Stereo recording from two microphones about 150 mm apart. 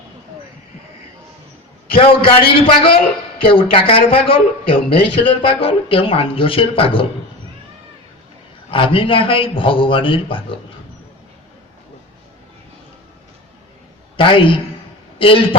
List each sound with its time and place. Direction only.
2.0 s a man's voice: 35° left (ahead or behind)
8.7 s a man's voice: 35° left (ahead or behind)
14.2 s a man's voice: 35° left (ahead or behind)